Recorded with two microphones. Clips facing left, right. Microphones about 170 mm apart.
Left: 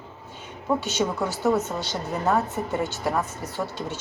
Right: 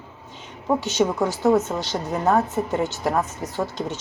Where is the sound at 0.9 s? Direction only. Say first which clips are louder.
Right 4 dB; 15° right (ahead or behind).